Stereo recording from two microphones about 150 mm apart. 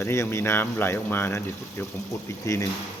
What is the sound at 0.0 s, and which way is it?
Speech, 15° left (ahead or behind).